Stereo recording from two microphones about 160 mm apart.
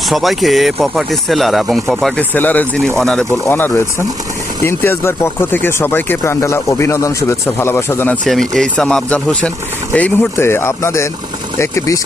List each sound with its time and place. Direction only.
0.1 s speech: centre (ahead or behind)
3.4 s speech: 15° left (ahead or behind)